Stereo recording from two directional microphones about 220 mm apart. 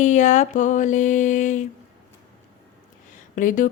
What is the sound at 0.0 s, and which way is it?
Speech, 35° left (ahead or behind).